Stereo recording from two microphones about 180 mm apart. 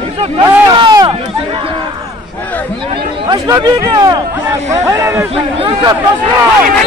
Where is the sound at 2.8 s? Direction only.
25° right (ahead or behind).